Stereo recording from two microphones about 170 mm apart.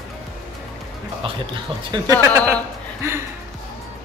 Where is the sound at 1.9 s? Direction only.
20° right (ahead or behind).